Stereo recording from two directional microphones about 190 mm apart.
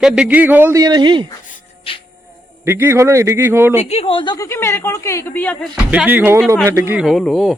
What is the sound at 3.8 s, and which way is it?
A woman's voice, 35° left (ahead or behind).